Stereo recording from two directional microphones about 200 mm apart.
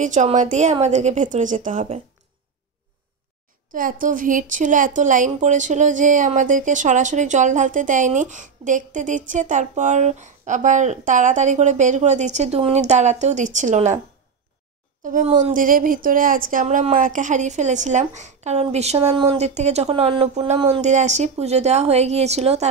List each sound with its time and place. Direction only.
0.0 s a woman's voice: 35° right (ahead or behind)
3.7 s a woman's voice: 45° right (ahead or behind)
15.0 s a woman's voice: 40° right (ahead or behind)